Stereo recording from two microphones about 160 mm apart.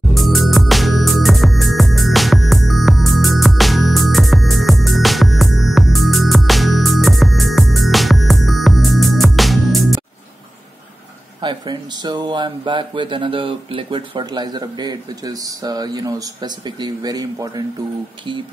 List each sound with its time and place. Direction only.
0.1 s music: centre (ahead or behind)
11.4 s speech: 25° right (ahead or behind)